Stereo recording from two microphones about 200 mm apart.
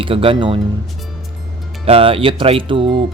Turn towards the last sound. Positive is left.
turn(degrees=-25)  # may be behind; listen again after turning